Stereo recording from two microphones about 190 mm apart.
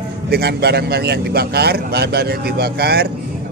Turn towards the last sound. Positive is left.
turn(degrees=-55)  # may be behind; listen again after turning